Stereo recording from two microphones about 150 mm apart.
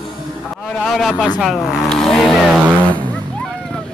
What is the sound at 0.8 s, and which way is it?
Speech, centre (ahead or behind).